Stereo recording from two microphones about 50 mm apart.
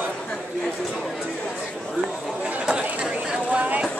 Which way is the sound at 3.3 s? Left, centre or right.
Right.